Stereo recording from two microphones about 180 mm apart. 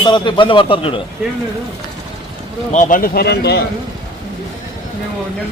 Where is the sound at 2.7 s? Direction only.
45° left (ahead or behind); by 3.6 s 65° left (ahead or behind).